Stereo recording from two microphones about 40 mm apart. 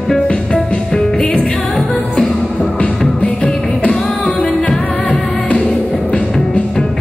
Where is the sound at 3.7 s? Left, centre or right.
Left.